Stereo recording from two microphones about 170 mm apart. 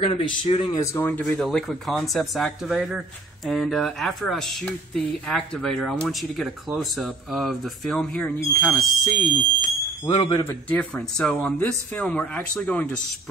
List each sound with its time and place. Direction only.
0.0 s speech: 35° left (ahead or behind)
0.7 s speech: 15° left (ahead or behind)
10.0 s a man's voice: 20° left (ahead or behind)